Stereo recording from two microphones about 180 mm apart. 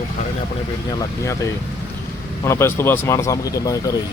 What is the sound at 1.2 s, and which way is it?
Speech, 15° left (ahead or behind).